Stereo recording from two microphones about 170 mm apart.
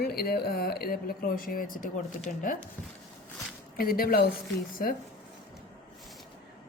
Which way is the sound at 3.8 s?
60° left (ahead or behind).